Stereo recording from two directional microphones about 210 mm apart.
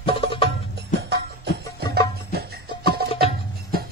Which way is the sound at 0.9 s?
55° right (ahead or behind).